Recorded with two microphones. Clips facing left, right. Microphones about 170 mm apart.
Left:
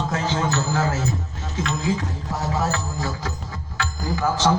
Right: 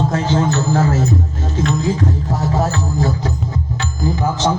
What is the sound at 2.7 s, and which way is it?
Music, 30° right (ahead or behind).